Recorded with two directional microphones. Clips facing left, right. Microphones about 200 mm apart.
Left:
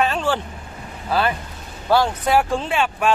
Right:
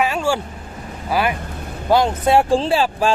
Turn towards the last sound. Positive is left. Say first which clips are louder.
# right 3 dB
turn(degrees=-30)  # may be behind; listen again after turning